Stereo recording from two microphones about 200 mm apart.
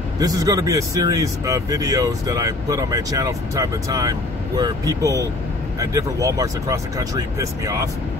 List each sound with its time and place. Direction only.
0.2 s speech: 20° right (ahead or behind)